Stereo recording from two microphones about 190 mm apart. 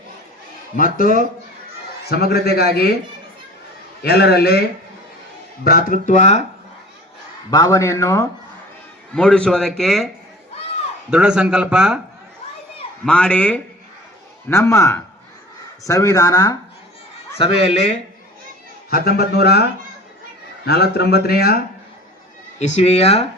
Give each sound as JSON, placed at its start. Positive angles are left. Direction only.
{"t": 0.9, "sound": "speech", "side_deg": 50}
{"t": 4.0, "sound": "speech", "side_deg": 60}
{"t": 5.6, "sound": "speech", "side_deg": 50}
{"t": 7.5, "sound": "speech", "side_deg": 20}
{"t": 9.1, "sound": "a man's voice", "side_deg": 5}
{"t": 11.1, "sound": "a man's voice", "side_deg": -5}
{"t": 13.1, "sound": "a man's voice", "side_deg": 5}
{"t": 17.3, "sound": "a man's voice", "side_deg": 30}
{"t": 18.9, "sound": "speech", "side_deg": 55}
{"t": 20.7, "sound": "speech", "side_deg": 60}
{"t": 22.5, "sound": "a man's voice", "side_deg": 35}